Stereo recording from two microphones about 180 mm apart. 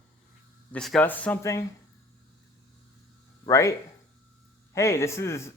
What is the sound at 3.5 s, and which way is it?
Speech, 15° left (ahead or behind).